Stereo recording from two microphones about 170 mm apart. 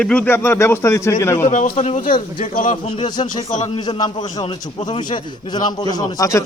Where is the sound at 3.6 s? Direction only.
25° left (ahead or behind).